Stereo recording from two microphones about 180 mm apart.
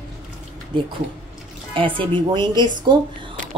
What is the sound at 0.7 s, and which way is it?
Speech, 30° right (ahead or behind).